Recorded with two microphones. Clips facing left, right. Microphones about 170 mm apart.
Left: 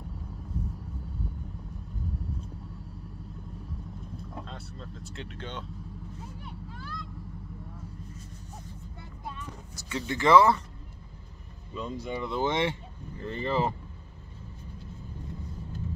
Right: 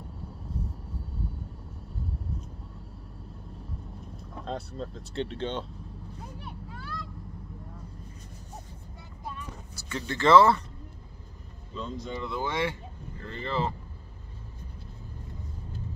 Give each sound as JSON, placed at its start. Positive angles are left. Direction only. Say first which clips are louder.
{"t": 4.5, "sound": "speech", "louder": "right 8 dB", "side_deg": -40}
{"t": 6.4, "sound": "vehicle", "louder": "right 1 dB", "side_deg": -60}
{"t": 9.8, "sound": "speech", "louder": "left 1 dB", "side_deg": 15}
{"t": 11.7, "sound": "speech", "louder": "left 1 dB", "side_deg": 10}